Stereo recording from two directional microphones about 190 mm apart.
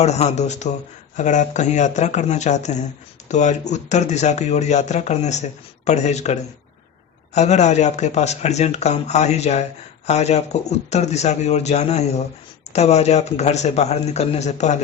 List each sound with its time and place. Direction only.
0.0 s speech: 35° left (ahead or behind)